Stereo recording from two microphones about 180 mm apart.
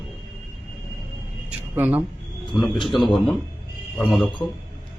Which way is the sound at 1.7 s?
10° right (ahead or behind).